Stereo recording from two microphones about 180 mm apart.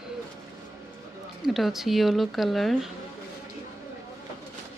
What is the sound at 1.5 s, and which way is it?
Speech, centre (ahead or behind).